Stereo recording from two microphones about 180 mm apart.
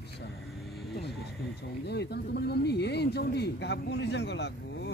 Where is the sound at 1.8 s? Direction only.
70° left (ahead or behind).